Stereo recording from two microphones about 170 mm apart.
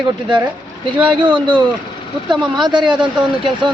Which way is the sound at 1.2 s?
30° right (ahead or behind).